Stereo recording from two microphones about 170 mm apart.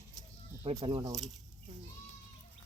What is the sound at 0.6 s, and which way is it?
Speech, 30° right (ahead or behind).